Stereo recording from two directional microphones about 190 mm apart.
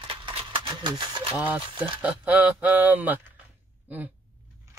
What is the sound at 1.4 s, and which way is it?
Speech, 10° right (ahead or behind).